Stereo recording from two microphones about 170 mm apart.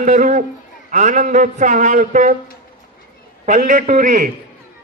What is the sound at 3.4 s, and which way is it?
Speech, 50° right (ahead or behind).